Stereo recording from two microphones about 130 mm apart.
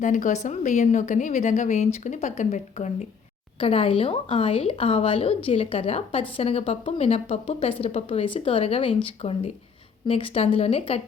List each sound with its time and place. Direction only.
0.0 s a woman's voice: 80° left
3.6 s a woman's voice: 45° left (ahead or behind)